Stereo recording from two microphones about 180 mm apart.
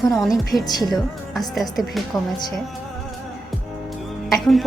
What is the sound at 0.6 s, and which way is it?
Speech, 20° left (ahead or behind).